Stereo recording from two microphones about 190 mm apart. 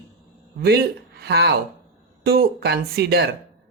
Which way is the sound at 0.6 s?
55° right (ahead or behind).